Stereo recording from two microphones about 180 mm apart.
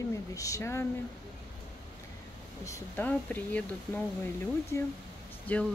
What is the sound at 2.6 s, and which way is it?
Speech, 15° left (ahead or behind).